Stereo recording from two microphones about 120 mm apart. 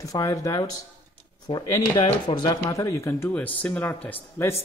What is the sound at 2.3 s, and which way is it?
Speech, 40° left (ahead or behind).